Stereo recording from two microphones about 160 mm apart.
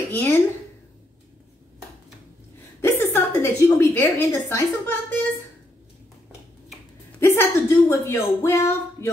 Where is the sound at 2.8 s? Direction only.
15° left (ahead or behind).